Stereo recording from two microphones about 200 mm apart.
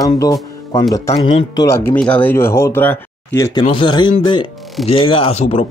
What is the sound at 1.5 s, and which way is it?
Speech, 15° left (ahead or behind).